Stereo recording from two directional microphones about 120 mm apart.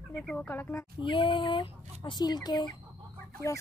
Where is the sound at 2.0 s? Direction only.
35° left (ahead or behind).